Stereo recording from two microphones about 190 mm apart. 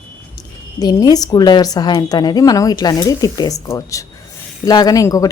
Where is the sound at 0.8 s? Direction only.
20° left (ahead or behind).